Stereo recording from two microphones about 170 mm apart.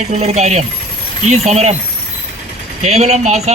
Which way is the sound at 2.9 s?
40° right (ahead or behind).